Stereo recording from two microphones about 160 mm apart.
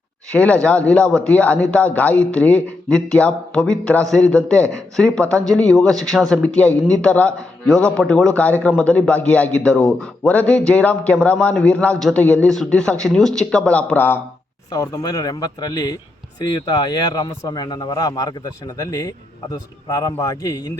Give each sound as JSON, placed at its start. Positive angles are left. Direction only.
{"t": 0.3, "sound": "a man's voice", "side_deg": 10}
{"t": 14.7, "sound": "a man's voice", "side_deg": 25}